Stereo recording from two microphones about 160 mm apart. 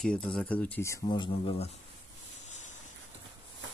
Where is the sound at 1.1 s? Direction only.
30° left (ahead or behind).